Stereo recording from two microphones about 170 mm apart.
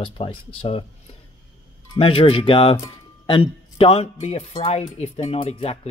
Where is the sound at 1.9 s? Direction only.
35° left (ahead or behind).